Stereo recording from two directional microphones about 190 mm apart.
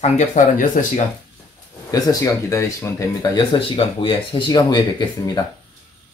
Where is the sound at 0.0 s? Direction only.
40° left (ahead or behind).